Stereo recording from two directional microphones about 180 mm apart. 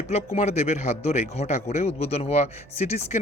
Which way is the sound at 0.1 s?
35° left (ahead or behind).